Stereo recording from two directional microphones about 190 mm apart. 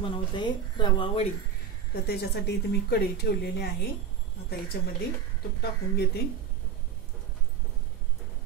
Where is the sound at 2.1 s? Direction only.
60° left (ahead or behind).